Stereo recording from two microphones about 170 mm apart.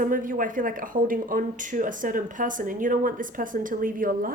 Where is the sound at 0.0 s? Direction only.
55° right (ahead or behind).